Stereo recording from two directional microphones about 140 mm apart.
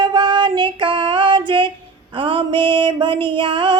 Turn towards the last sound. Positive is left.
turn(degrees=-35)  # may be behind; listen again after turning